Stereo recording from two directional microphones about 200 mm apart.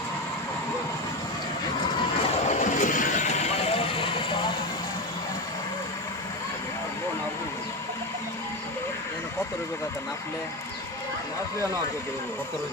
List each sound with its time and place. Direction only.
2.4 s vehicle: 35° left (ahead or behind)